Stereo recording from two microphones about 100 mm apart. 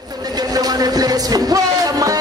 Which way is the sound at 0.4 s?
40° right (ahead or behind).